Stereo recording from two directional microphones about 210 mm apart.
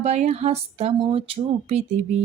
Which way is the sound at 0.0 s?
30° right (ahead or behind).